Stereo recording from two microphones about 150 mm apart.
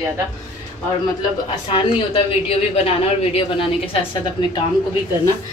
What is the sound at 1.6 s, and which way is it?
A woman's voice, 35° left (ahead or behind).